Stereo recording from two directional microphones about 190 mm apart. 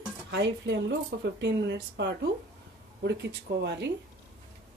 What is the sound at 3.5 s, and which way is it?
Speech, 65° right (ahead or behind).